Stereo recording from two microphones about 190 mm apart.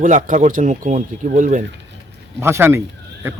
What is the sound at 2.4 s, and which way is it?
Speech, 10° right (ahead or behind).